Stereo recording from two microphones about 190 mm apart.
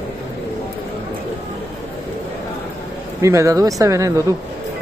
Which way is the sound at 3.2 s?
15° right (ahead or behind).